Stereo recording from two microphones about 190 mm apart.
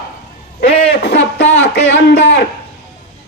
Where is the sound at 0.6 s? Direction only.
30° left (ahead or behind).